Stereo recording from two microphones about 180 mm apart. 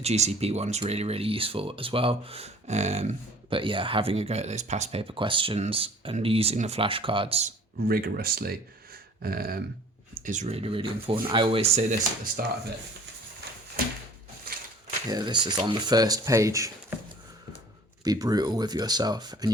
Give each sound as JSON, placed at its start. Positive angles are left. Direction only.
{"t": 0.0, "sound": "speech", "side_deg": -35}
{"t": 7.8, "sound": "speech", "side_deg": -55}
{"t": 10.2, "sound": "speech", "side_deg": -40}
{"t": 14.5, "sound": "a sound", "side_deg": -55}
{"t": 15.1, "sound": "speech", "side_deg": -25}
{"t": 18.0, "sound": "speech", "side_deg": -20}